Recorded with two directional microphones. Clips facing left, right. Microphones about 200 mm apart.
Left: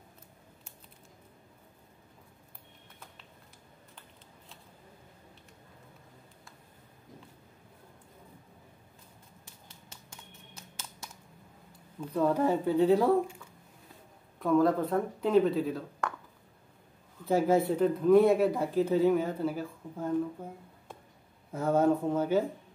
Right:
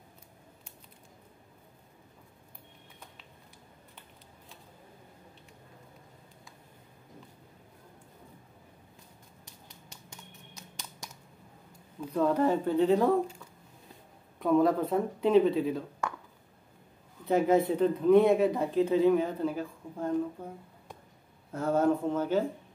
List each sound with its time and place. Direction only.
12.1 s speech: 10° left (ahead or behind)
14.4 s speech: centre (ahead or behind)
17.3 s speech: 5° left (ahead or behind)
21.5 s speech: 10° left (ahead or behind)